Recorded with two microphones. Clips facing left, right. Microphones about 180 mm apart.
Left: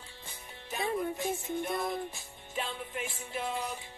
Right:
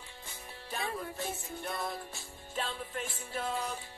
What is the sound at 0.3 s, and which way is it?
Music, 20° left (ahead or behind).